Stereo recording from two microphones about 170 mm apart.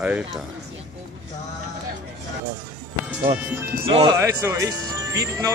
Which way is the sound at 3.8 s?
30° right (ahead or behind).